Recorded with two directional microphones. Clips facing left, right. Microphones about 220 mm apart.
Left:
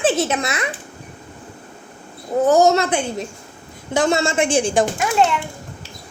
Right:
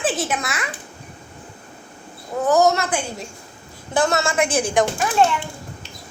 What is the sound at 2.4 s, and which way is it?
A woman's voice, 25° left (ahead or behind).